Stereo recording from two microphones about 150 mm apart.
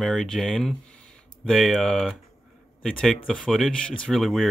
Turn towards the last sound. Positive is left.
turn(degrees=0)  # may be behind; listen again after turning